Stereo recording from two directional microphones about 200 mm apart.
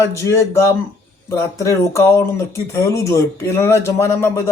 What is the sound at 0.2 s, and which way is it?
Speech, 15° left (ahead or behind).